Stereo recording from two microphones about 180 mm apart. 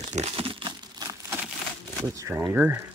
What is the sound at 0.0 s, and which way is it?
Crumpling, 35° right (ahead or behind).